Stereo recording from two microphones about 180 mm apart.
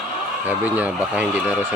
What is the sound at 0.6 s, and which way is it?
Speech, 10° right (ahead or behind).